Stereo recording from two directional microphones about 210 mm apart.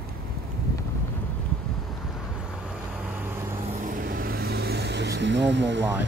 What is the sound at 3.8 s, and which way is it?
Vehicle, 40° right (ahead or behind).